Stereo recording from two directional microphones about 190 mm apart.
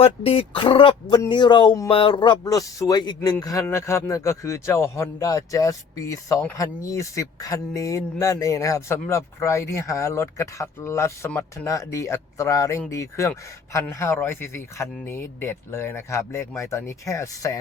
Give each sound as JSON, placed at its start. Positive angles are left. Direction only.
{"t": 0.0, "sound": "speech", "side_deg": 30}